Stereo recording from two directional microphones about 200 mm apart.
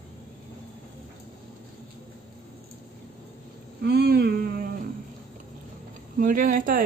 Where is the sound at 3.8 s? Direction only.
55° right (ahead or behind).